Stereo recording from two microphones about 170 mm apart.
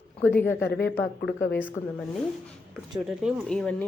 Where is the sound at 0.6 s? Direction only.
70° left (ahead or behind).